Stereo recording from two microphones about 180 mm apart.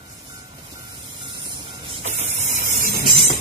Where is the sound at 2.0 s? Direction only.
40° right (ahead or behind).